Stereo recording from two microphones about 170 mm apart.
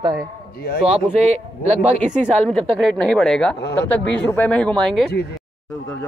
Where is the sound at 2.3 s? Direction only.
5° left (ahead or behind).